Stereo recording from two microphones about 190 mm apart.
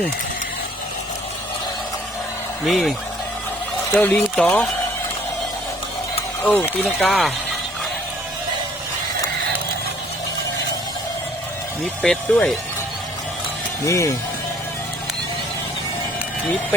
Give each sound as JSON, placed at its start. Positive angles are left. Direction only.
{"t": 2.6, "sound": "speech", "side_deg": 0}
{"t": 3.9, "sound": "speech", "side_deg": 10}
{"t": 6.4, "sound": "speech", "side_deg": 10}
{"t": 12.0, "sound": "speech", "side_deg": 5}
{"t": 13.8, "sound": "speech", "side_deg": 15}